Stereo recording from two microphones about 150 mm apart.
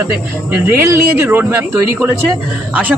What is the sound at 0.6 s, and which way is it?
A man's voice, 15° right (ahead or behind).